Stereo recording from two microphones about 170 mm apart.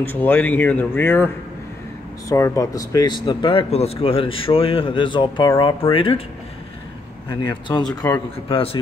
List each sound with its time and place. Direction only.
0.0 s speech: 10° left (ahead or behind); by 6.2 s 30° left (ahead or behind)
7.2 s speech: 25° left (ahead or behind)